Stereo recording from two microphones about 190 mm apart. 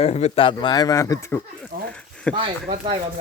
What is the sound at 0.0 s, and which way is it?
Speech, 35° left (ahead or behind).